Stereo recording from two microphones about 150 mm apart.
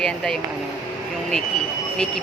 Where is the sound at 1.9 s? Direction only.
5° left (ahead or behind).